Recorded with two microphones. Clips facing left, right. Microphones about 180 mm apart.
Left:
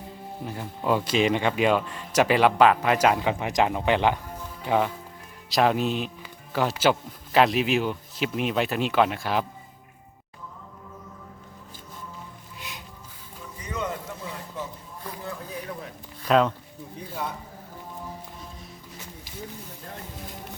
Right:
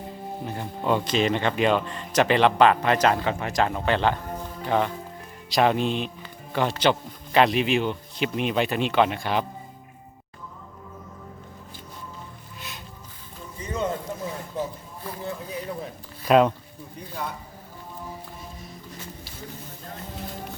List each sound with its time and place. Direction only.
0.4 s speech: 5° left (ahead or behind)
12.5 s music: 15° left (ahead or behind)
13.6 s a sound: 30° right (ahead or behind)
16.2 s speech: 15° right (ahead or behind)